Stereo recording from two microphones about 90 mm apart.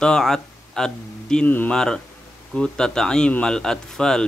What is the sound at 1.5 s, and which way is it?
Speech, 20° left (ahead or behind).